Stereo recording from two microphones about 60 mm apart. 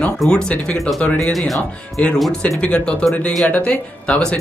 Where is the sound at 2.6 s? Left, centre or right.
Centre.